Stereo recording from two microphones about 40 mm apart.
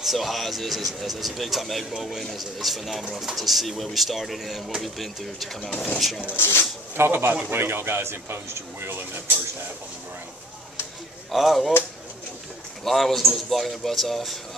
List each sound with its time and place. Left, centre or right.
0.0 s a man's voice: centre
6.3 s speech: left
7.0 s a man's voice: right
11.3 s speech: centre
12.8 s speech: centre